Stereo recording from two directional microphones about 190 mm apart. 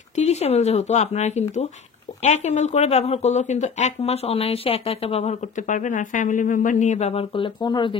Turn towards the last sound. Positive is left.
turn(degrees=25)  # may be behind; listen again after turning